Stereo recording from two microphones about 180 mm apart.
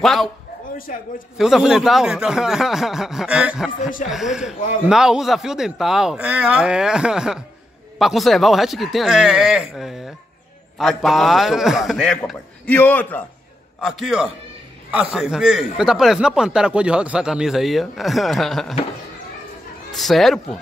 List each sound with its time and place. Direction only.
0.0 s speech: centre (ahead or behind)
0.9 s a man's voice: 45° left (ahead or behind)
1.4 s speech: centre (ahead or behind)
19.9 s speech: centre (ahead or behind)